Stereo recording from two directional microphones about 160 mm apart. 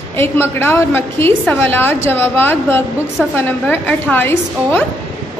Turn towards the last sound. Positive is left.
turn(degrees=10)  # may be behind; listen again after turning